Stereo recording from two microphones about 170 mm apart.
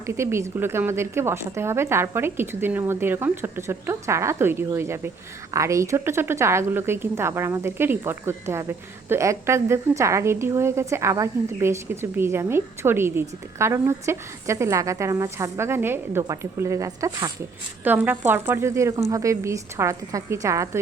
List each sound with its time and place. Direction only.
0.0 s a woman's voice: 15° right (ahead or behind)